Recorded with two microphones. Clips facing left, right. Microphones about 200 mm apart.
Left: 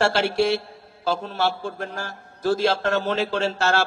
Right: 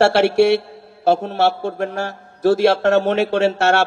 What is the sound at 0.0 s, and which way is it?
Speech, 70° right (ahead or behind).